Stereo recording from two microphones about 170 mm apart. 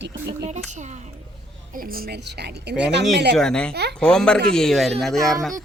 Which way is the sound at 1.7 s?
60° right (ahead or behind).